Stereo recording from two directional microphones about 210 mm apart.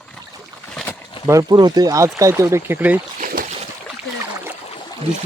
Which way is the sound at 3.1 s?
40° right (ahead or behind).